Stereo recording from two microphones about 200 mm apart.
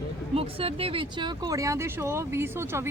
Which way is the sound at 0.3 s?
30° right (ahead or behind).